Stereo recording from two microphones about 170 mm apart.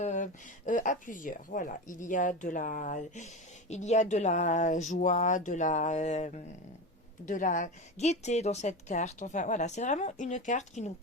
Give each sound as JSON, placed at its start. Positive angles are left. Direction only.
{"t": 0.0, "sound": "a woman's voice", "side_deg": 50}